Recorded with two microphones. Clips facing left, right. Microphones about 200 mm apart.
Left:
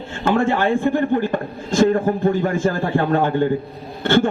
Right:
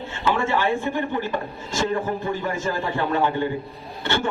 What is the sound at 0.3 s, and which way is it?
A man's voice, 50° left (ahead or behind).